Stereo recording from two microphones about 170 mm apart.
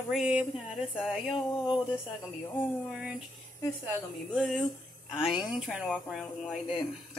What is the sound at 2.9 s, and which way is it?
Speech, 5° right (ahead or behind).